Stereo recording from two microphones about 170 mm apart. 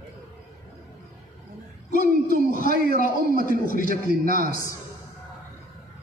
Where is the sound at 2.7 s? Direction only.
60° right (ahead or behind).